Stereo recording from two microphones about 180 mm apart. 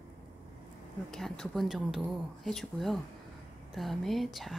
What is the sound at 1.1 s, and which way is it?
A woman's voice, 5° left (ahead or behind).